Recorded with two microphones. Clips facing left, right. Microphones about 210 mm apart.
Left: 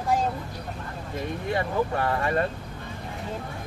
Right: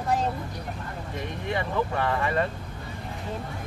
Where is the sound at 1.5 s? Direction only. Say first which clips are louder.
Left 1 dB; 35° left (ahead or behind).